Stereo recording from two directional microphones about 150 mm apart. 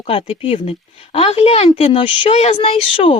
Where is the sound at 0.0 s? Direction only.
40° left (ahead or behind).